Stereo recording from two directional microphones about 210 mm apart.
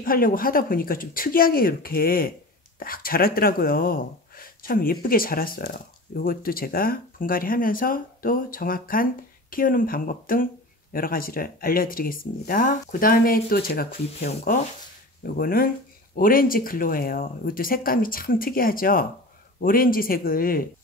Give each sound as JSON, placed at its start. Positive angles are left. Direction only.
{"t": 0.0, "sound": "speech", "side_deg": 45}